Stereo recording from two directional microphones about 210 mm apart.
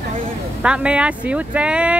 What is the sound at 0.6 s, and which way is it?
Speech, 5° right (ahead or behind).